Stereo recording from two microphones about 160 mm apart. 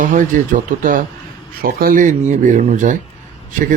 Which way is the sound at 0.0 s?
55° right (ahead or behind).